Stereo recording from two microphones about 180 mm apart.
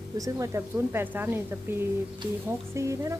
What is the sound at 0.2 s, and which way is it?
Speech, 20° right (ahead or behind).